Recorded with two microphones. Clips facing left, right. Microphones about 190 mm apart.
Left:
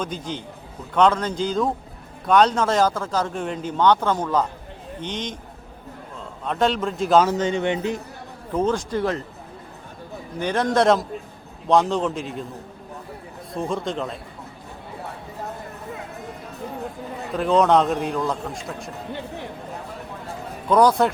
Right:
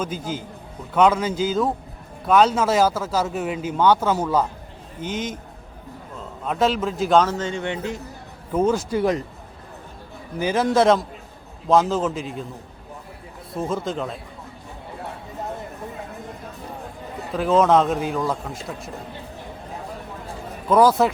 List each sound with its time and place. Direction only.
0.0 s a man's voice: 5° right (ahead or behind)
6.4 s a man's voice: 5° right (ahead or behind)
7.3 s speech: 15° left (ahead or behind)
8.5 s speech: 10° right (ahead or behind)
10.4 s a man's voice: 5° right (ahead or behind)
13.5 s a man's voice: centre (ahead or behind)
17.3 s a man's voice: centre (ahead or behind)
20.7 s a man's voice: 5° right (ahead or behind)